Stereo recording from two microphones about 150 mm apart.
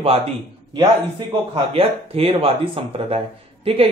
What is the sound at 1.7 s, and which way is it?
Speech, 40° right (ahead or behind).